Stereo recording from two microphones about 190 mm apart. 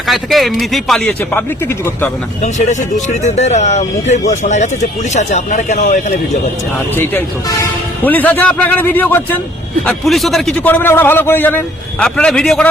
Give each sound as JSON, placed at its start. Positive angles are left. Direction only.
{"t": 0.1, "sound": "a man's voice", "side_deg": 0}
{"t": 2.4, "sound": "speech", "side_deg": 40}
{"t": 6.9, "sound": "a man's voice", "side_deg": 10}